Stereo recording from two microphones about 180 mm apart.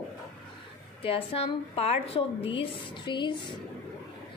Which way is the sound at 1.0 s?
30° left (ahead or behind).